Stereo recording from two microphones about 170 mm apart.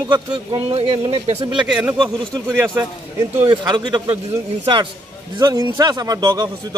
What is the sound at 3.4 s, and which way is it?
Speech, 25° right (ahead or behind).